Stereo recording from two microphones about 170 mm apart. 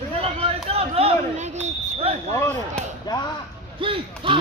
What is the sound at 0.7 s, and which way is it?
Speech, 35° right (ahead or behind).